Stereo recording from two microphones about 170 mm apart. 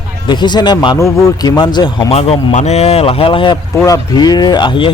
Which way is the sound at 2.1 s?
35° left (ahead or behind).